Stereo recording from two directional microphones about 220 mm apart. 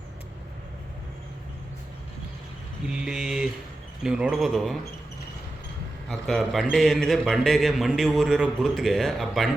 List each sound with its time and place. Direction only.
2.8 s a man's voice: 5° right (ahead or behind)
6.1 s a man's voice: centre (ahead or behind)